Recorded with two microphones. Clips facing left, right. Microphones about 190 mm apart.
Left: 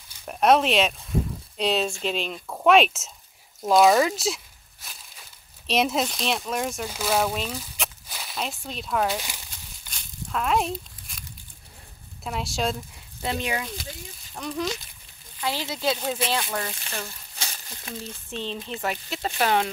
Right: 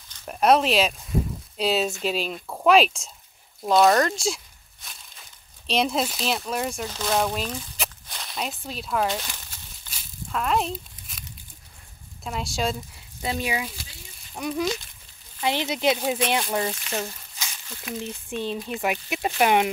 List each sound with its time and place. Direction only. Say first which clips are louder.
0.2 s speech: even; centre (ahead or behind)
5.7 s speech: even; centre (ahead or behind)
9.8 s a sound: left 1 dB; centre (ahead or behind)
12.2 s speech: even; centre (ahead or behind); by 17.1 s 25° right (ahead or behind)
17.4 s crumpling: left 2 dB; 30° left (ahead or behind)
17.9 s speech: right 4 dB; 15° right (ahead or behind)